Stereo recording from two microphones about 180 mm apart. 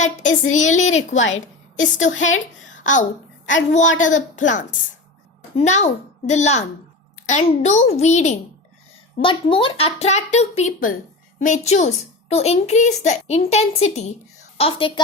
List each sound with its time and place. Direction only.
0.0 s a child's voice: 40° left (ahead or behind)
3.7 s a woman's voice: 45° left (ahead or behind)
9.2 s a child's voice: 30° left (ahead or behind)